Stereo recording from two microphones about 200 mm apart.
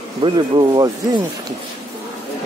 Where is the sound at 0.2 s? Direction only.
20° right (ahead or behind).